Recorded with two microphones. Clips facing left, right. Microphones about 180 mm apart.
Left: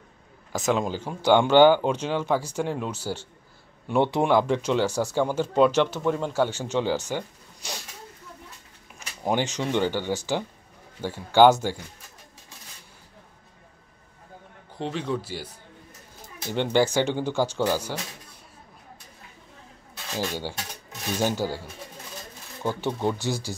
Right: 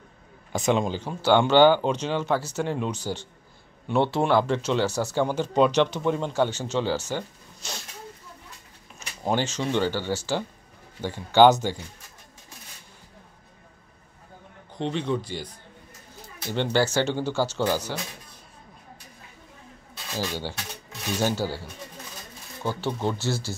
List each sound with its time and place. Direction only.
0.5 s speech: centre (ahead or behind)
9.2 s speech: 15° left (ahead or behind)
14.8 s speech: 5° left (ahead or behind)
16.5 s speech: 15° left (ahead or behind)
20.2 s speech: 15° left (ahead or behind)